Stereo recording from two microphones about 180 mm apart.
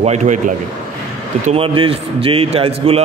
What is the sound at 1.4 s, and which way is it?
A man's voice, 30° right (ahead or behind).